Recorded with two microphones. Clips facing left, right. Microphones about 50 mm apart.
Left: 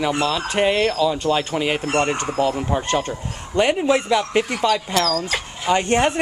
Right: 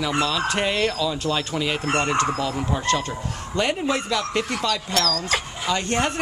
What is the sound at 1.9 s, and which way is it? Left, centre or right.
Speech, left.